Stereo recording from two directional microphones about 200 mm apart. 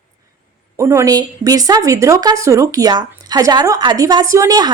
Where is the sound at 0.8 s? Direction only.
15° right (ahead or behind).